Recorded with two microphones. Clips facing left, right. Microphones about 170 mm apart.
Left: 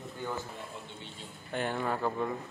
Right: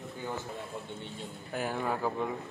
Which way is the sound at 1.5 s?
5° right (ahead or behind).